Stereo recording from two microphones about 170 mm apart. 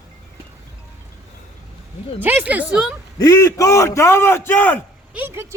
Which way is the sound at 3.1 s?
20° left (ahead or behind).